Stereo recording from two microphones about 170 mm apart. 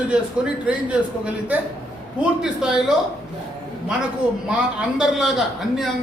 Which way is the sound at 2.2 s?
5° right (ahead or behind).